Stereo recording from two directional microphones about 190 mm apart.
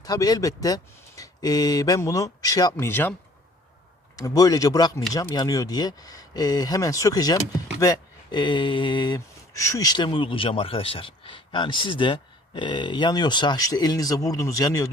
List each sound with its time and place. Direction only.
0.0 s speech: 20° left (ahead or behind)
4.2 s speech: 20° left (ahead or behind)